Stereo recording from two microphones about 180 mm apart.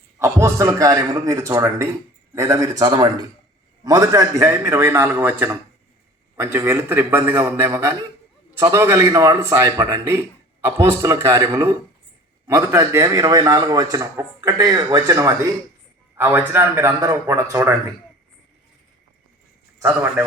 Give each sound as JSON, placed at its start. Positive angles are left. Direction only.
{"t": 0.2, "sound": "a man's voice", "side_deg": -15}
{"t": 19.8, "sound": "a man's voice", "side_deg": -10}